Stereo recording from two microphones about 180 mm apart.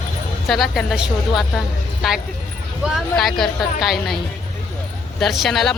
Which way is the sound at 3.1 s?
Centre (ahead or behind).